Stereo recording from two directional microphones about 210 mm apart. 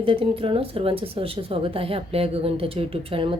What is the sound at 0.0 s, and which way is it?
Speech, 25° right (ahead or behind).